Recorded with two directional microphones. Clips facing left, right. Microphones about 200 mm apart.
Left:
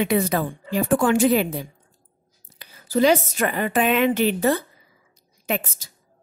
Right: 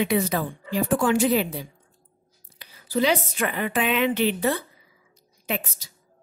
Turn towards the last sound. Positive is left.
turn(degrees=50)  # may be behind; listen again after turning